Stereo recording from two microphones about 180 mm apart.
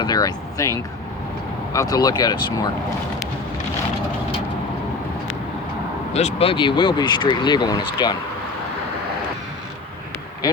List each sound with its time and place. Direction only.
0.0 s speech: 20° left (ahead or behind)
1.7 s speech: 20° left (ahead or behind)
6.1 s speech: 35° left (ahead or behind)